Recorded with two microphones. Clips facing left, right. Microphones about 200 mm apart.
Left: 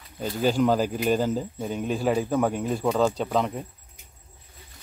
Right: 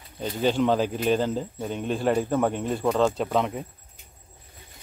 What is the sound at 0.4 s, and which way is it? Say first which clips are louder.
Speech: even; 5° left (ahead or behind).